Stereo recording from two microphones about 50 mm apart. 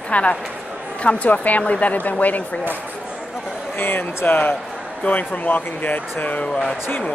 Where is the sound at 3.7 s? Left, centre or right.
Left.